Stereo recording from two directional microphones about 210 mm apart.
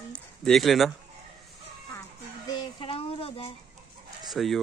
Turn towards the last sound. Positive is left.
turn(degrees=0)  # may be behind; listen again after turning